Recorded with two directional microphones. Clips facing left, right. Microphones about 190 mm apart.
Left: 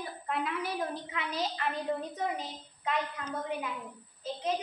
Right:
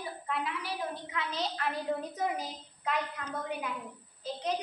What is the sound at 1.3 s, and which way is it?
A woman's voice, centre (ahead or behind).